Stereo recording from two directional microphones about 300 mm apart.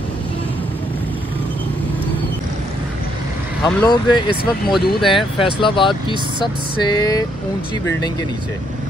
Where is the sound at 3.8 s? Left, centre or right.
Centre.